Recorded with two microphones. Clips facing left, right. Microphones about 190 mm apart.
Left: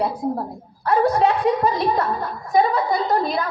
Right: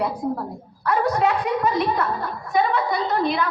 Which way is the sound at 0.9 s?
30° left (ahead or behind).